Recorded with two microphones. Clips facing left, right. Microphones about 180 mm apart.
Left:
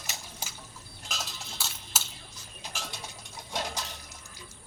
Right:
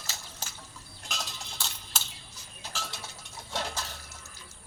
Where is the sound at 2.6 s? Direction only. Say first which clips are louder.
Right 1 dB; 15° left (ahead or behind).